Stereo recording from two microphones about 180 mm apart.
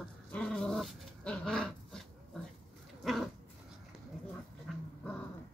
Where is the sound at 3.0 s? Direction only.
Centre (ahead or behind).